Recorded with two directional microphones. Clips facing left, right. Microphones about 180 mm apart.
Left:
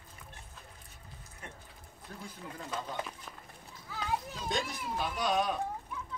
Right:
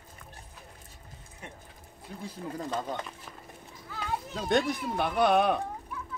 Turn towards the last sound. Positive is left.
turn(degrees=-60)  # may be behind; listen again after turning